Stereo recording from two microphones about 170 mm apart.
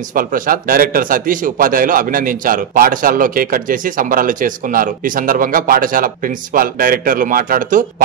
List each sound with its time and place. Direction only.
0.1 s a man's voice: 55° right (ahead or behind)